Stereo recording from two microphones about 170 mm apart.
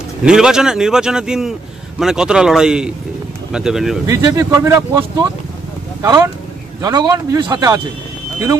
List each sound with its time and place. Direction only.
0.2 s speech: 5° right (ahead or behind)
4.1 s a man's voice: 15° right (ahead or behind)